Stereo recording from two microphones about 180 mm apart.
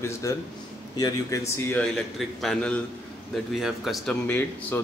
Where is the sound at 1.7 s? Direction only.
Centre (ahead or behind).